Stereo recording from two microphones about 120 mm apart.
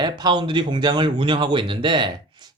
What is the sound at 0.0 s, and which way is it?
Speech, 40° right (ahead or behind).